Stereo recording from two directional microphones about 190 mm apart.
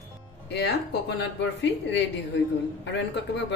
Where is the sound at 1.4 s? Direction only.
70° left (ahead or behind).